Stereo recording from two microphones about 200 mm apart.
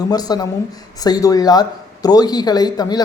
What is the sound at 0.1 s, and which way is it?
Speech, 20° left (ahead or behind).